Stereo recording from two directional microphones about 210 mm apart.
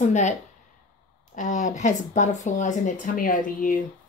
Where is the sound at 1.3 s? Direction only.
35° left (ahead or behind).